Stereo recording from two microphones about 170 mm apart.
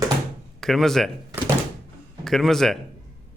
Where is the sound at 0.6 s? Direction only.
Centre (ahead or behind).